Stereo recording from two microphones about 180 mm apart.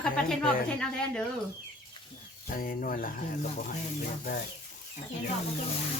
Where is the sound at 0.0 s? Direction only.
5° left (ahead or behind).